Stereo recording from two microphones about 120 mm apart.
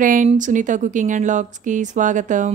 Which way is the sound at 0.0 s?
90° right.